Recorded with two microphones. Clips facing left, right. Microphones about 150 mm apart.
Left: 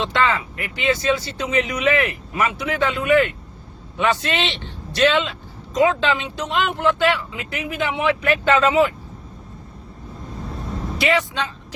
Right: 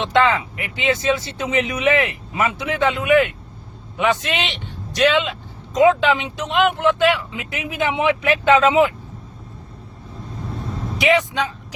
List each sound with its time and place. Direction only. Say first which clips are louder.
0.0 s speech: right 3 dB; 20° right (ahead or behind)
10.9 s a man's voice: right 3 dB; 15° right (ahead or behind)